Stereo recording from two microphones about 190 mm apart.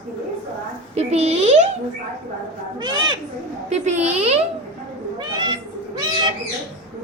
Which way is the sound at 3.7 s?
35° right (ahead or behind).